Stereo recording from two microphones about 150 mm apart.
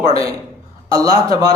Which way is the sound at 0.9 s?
25° right (ahead or behind).